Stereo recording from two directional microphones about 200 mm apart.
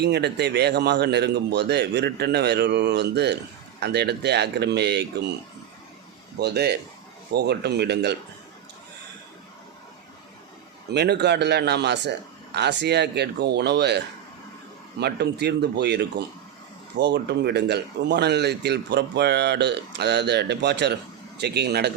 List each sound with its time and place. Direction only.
0.0 s speech: 55° right (ahead or behind)
6.4 s speech: 55° right (ahead or behind)
10.9 s speech: 55° right (ahead or behind)